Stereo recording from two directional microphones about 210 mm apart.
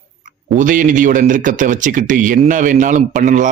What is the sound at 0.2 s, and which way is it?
Speech, 40° right (ahead or behind).